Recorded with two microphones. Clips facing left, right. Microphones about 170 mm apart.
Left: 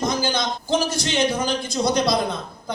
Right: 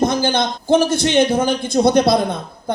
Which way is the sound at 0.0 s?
60° right (ahead or behind).